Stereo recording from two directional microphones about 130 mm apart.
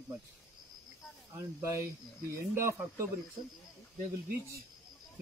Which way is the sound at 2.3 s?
20° right (ahead or behind).